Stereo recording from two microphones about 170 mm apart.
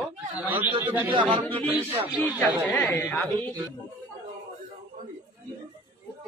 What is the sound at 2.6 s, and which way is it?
Speech, 5° left (ahead or behind).